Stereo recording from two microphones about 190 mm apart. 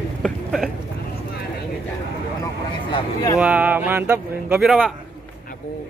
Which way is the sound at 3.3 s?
5° right (ahead or behind).